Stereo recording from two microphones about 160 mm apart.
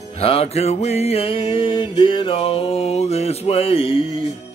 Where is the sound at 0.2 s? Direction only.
35° left (ahead or behind).